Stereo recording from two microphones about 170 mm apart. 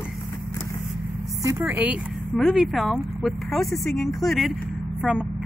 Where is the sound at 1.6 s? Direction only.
10° right (ahead or behind).